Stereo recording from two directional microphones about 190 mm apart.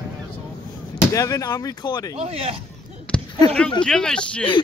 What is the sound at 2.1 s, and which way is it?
Speech, 30° right (ahead or behind).